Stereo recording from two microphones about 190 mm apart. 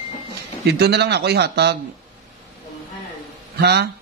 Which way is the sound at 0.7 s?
60° right (ahead or behind).